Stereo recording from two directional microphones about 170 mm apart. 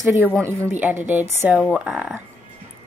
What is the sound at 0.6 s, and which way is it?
Speech, 10° right (ahead or behind).